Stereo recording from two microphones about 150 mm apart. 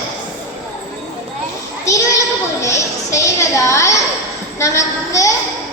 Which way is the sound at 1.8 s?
20° left (ahead or behind).